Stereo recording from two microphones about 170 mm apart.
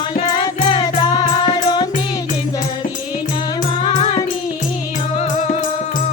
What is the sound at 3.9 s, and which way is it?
Music, 40° left (ahead or behind).